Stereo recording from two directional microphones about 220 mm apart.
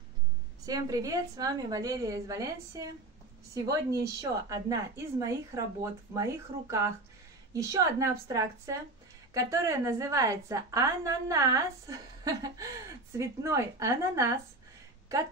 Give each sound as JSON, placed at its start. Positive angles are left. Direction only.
{"t": 0.7, "sound": "a woman's voice", "side_deg": -15}